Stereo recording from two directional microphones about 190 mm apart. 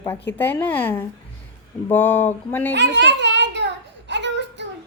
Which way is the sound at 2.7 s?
65° right (ahead or behind).